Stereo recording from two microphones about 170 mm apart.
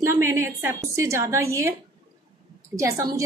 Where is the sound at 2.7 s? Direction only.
15° right (ahead or behind).